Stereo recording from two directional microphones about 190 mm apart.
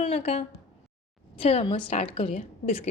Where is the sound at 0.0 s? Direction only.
30° left (ahead or behind).